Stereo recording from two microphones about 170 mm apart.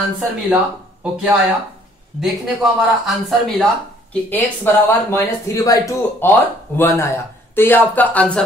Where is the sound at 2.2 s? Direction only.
Centre (ahead or behind).